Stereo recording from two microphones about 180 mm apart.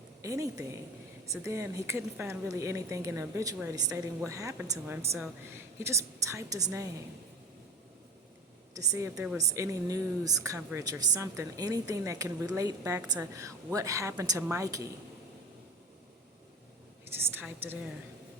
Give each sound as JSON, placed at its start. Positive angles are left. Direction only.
{"t": 0.2, "sound": "speech", "side_deg": -20}
{"t": 8.7, "sound": "speech", "side_deg": -15}
{"t": 17.2, "sound": "speech", "side_deg": -10}